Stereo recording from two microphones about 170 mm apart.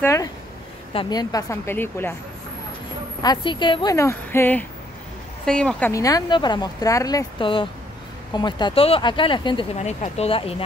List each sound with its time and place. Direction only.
0.0 s a woman's voice: 15° left (ahead or behind)
3.2 s speech: 25° left (ahead or behind)
3.9 s a woman's voice: 15° left (ahead or behind)
9.8 s speech: 40° left (ahead or behind)